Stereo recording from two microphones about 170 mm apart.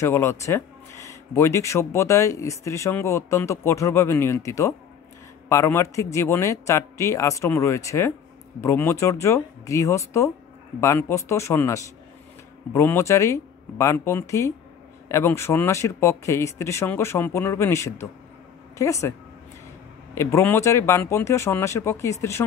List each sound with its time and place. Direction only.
0.0 s speech: 15° left (ahead or behind)
20.2 s speech: 15° left (ahead or behind)